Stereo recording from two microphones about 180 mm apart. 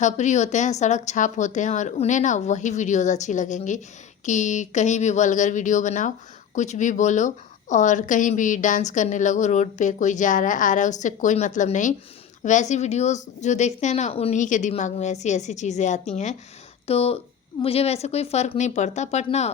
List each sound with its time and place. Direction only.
0.0 s a woman's voice: 40° left (ahead or behind)